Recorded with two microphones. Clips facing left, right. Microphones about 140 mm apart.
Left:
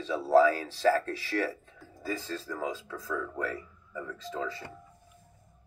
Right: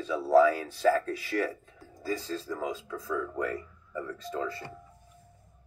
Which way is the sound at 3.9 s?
45° right (ahead or behind).